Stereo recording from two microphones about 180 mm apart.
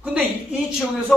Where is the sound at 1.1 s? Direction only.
5° left (ahead or behind).